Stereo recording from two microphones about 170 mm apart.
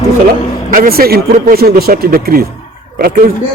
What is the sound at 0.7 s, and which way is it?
Speech, 60° right (ahead or behind).